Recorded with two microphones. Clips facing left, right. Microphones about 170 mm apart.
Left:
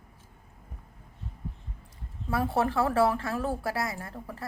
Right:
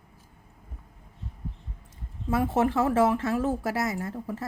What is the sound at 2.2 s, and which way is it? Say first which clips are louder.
Speech: right 3 dB; 20° right (ahead or behind).